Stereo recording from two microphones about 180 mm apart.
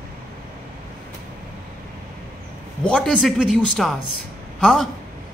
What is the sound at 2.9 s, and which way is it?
Speech, 5° left (ahead or behind).